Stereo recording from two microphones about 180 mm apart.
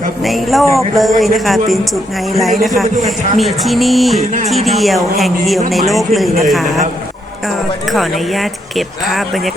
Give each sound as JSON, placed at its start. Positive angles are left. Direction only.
{"t": 0.2, "sound": "speech", "side_deg": 0}
{"t": 0.6, "sound": "speech", "side_deg": 15}
{"t": 0.9, "sound": "speech", "side_deg": 0}
{"t": 7.9, "sound": "speech", "side_deg": 0}